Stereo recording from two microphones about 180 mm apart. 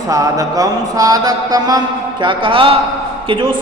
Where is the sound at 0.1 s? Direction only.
20° right (ahead or behind).